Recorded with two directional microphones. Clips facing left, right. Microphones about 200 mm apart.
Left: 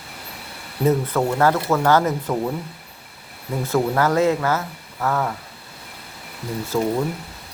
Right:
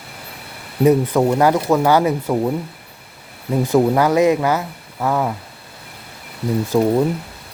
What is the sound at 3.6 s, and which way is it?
Speech, 15° right (ahead or behind).